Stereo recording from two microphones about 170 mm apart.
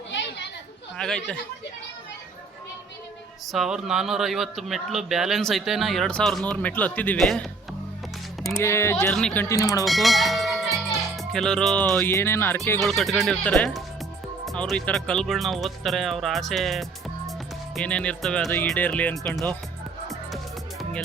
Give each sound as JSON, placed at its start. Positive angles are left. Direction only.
{"t": 0.1, "sound": "chatter", "side_deg": 90}
{"t": 0.9, "sound": "speech", "side_deg": 5}
{"t": 3.4, "sound": "speech", "side_deg": 0}
{"t": 8.6, "sound": "speech", "side_deg": 15}
{"t": 9.8, "sound": "speech", "side_deg": 0}
{"t": 12.8, "sound": "speech", "side_deg": 0}
{"t": 20.1, "sound": "music", "side_deg": 0}